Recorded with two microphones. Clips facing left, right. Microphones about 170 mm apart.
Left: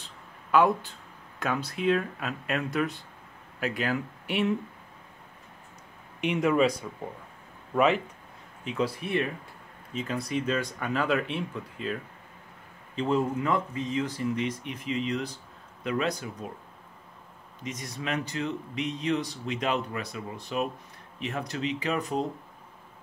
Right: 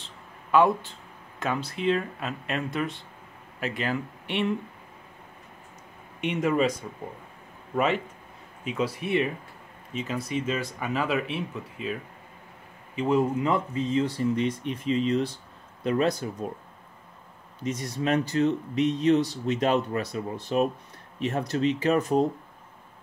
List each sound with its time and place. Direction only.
0.0 s a sound: centre (ahead or behind)
1.4 s speech: centre (ahead or behind)
6.2 s speech: centre (ahead or behind)
7.7 s a man's voice: centre (ahead or behind)
13.4 s speech: 25° right (ahead or behind)
17.6 s speech: 40° right (ahead or behind)